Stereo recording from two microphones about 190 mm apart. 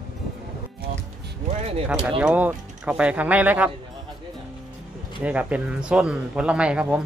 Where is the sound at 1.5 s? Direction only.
35° right (ahead or behind).